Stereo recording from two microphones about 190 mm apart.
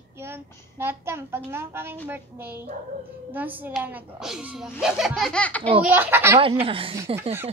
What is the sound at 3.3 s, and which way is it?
A child's voice, 10° right (ahead or behind).